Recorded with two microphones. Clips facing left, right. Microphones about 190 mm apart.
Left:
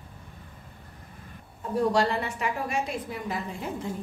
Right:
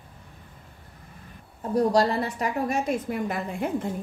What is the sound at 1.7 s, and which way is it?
A woman's voice, 40° right (ahead or behind).